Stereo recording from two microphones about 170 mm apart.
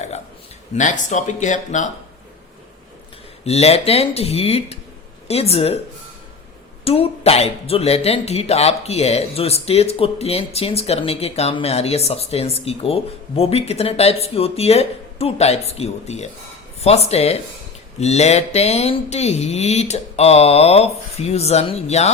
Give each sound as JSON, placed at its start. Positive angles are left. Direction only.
{"t": 0.8, "sound": "speech", "side_deg": 45}
{"t": 3.4, "sound": "speech", "side_deg": 35}
{"t": 6.8, "sound": "speech", "side_deg": 35}